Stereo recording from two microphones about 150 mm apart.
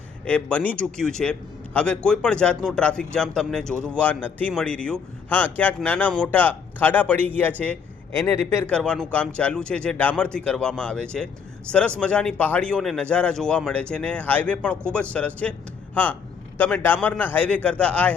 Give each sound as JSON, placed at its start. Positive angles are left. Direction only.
{"t": 0.3, "sound": "a man's voice", "side_deg": 10}
{"t": 8.7, "sound": "a man's voice", "side_deg": 5}